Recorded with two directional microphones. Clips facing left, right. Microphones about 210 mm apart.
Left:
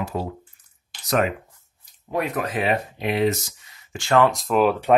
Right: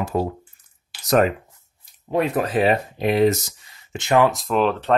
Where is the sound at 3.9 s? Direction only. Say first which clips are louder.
Right 1 dB; 20° right (ahead or behind).